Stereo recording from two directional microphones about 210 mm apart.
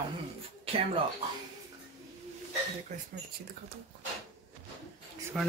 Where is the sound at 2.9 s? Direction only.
35° right (ahead or behind).